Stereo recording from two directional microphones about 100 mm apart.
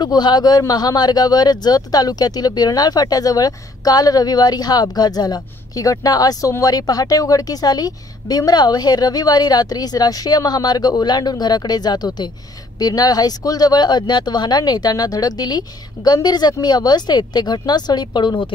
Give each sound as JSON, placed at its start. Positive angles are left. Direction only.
{"t": 0.0, "sound": "speech", "side_deg": 45}